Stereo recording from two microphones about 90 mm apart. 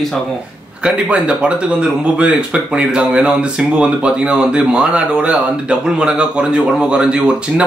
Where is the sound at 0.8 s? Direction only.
10° right (ahead or behind).